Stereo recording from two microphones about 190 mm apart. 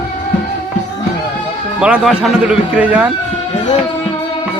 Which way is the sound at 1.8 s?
5° right (ahead or behind).